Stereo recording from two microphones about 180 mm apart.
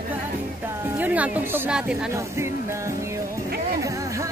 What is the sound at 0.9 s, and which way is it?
Speech, 10° right (ahead or behind).